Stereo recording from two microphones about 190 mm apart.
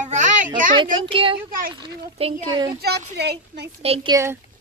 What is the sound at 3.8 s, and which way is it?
Speech, 30° right (ahead or behind).